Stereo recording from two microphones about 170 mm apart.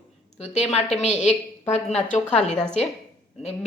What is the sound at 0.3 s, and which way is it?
A woman's voice, 40° left (ahead or behind).